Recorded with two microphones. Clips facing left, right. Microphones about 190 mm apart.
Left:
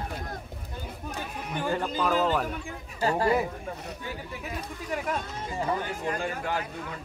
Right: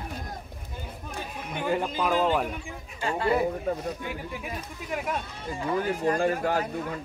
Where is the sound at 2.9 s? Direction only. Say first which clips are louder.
Left 2 dB; 40° left (ahead or behind).